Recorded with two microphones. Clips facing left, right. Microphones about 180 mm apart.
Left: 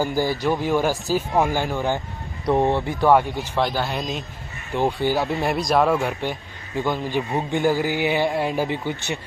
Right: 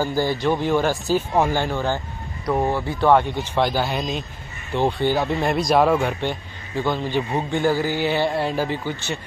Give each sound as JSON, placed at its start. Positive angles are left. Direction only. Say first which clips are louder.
{"t": 0.0, "sound": "speech", "louder": "right 1 dB", "side_deg": 15}
{"t": 7.5, "sound": "speech", "louder": "even", "side_deg": 15}